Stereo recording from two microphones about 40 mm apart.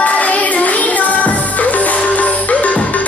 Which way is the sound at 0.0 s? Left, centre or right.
Left.